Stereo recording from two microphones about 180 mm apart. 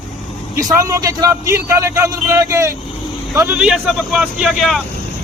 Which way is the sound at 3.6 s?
Centre (ahead or behind).